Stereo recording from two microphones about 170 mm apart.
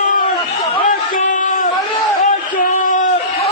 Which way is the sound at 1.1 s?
50° left (ahead or behind).